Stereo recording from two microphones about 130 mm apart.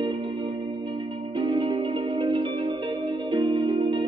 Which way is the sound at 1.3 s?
40° right (ahead or behind).